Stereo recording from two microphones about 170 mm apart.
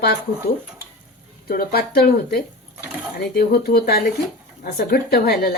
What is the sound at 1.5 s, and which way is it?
Speech, 65° left (ahead or behind).